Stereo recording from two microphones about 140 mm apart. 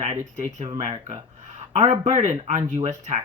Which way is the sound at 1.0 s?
50° right (ahead or behind).